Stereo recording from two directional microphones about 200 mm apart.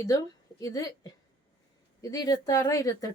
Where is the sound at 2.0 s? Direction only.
20° left (ahead or behind).